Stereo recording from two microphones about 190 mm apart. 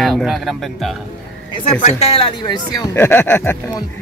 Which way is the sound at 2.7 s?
10° left (ahead or behind).